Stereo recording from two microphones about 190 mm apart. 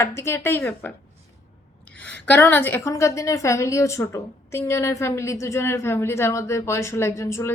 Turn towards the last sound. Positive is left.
turn(degrees=15)  # may be behind; listen again after turning